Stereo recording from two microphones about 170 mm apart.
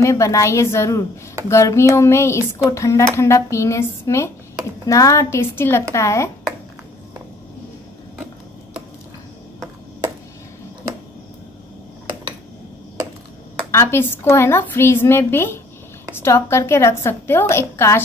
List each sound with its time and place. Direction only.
0.0 s speech: 15° left (ahead or behind)
13.7 s speech: 15° left (ahead or behind)